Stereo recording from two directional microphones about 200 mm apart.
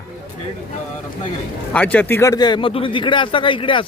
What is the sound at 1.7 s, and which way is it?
A man's voice, 5° left (ahead or behind).